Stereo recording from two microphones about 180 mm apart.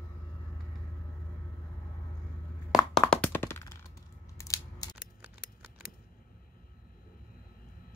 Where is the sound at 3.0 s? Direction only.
10° left (ahead or behind).